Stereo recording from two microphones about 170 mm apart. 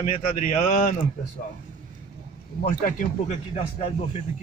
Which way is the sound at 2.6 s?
50° left (ahead or behind).